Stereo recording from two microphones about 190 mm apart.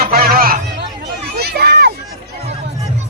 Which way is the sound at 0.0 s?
50° right (ahead or behind).